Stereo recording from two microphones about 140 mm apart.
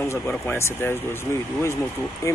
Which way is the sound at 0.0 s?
15° left (ahead or behind).